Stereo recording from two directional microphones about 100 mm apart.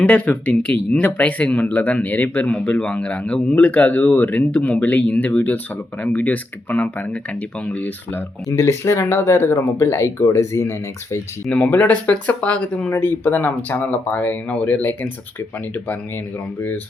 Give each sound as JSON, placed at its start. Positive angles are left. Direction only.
{"t": 0.0, "sound": "speech", "side_deg": 15}
{"t": 8.4, "sound": "speech", "side_deg": 25}
{"t": 11.5, "sound": "speech", "side_deg": 15}
{"t": 16.6, "sound": "speech", "side_deg": 20}